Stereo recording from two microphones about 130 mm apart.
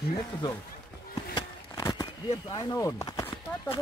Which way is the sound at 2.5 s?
25° left (ahead or behind).